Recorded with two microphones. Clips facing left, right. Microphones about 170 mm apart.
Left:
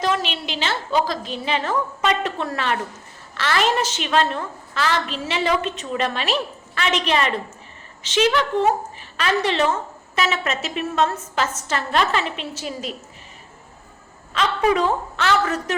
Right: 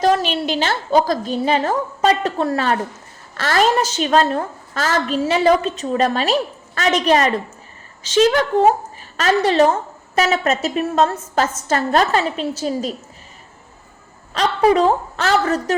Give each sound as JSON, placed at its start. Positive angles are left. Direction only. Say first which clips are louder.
{"t": 0.0, "sound": "a woman's voice", "louder": "right 6 dB", "side_deg": -40}
{"t": 14.3, "sound": "a woman's voice", "louder": "right 4 dB", "side_deg": -35}